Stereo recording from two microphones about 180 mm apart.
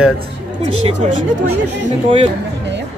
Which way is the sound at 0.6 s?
35° right (ahead or behind).